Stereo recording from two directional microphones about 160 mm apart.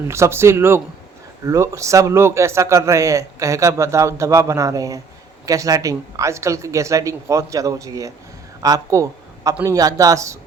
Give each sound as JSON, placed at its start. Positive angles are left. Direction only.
{"t": 0.1, "sound": "a man's voice", "side_deg": -15}